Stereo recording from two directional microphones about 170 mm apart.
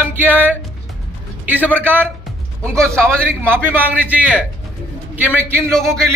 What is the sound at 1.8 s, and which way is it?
Speech, 10° right (ahead or behind).